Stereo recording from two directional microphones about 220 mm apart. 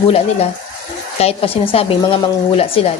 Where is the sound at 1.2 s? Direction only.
25° left (ahead or behind).